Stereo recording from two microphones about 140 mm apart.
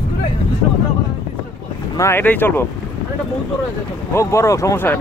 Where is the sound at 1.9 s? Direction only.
15° left (ahead or behind).